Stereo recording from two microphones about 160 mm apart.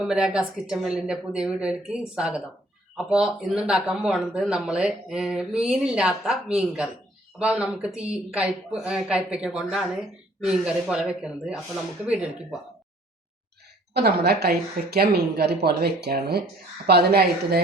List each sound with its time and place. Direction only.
0.0 s speech: 5° right (ahead or behind)
13.9 s a woman's voice: 90° right